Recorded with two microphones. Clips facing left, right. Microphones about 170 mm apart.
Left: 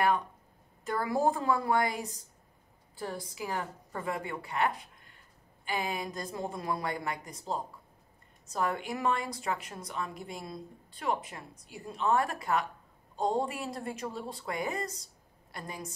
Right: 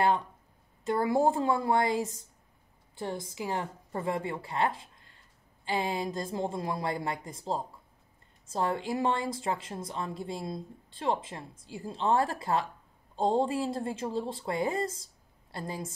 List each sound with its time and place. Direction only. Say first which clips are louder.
0.8 s a woman's voice: right 3 dB; 25° right (ahead or behind)